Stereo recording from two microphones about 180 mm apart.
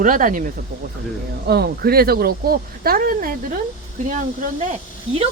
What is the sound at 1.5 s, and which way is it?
Speech, 60° right (ahead or behind).